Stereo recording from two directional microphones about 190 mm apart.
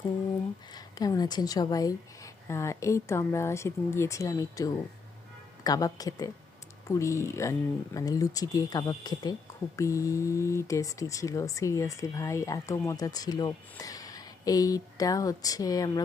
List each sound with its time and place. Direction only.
0.7 s speech: 20° left (ahead or behind)